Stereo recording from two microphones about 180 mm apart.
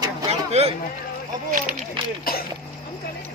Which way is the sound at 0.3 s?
35° right (ahead or behind).